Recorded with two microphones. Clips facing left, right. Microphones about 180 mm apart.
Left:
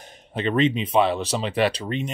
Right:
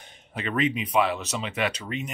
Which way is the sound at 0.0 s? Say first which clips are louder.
Left 7 dB; 30° left (ahead or behind).